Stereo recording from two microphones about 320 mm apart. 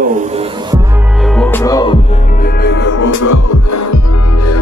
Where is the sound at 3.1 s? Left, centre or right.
Left.